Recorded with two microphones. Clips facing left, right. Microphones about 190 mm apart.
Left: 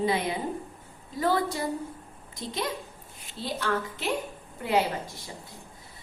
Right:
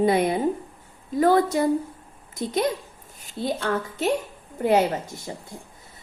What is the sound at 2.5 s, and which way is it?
A woman's voice, 45° right (ahead or behind).